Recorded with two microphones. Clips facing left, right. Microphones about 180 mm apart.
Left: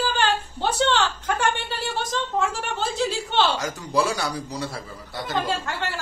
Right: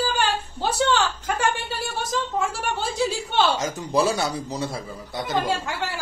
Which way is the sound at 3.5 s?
20° right (ahead or behind).